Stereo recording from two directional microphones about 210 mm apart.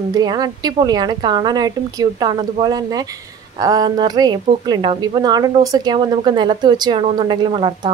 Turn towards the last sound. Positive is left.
turn(degrees=-20)  # may be behind; listen again after turning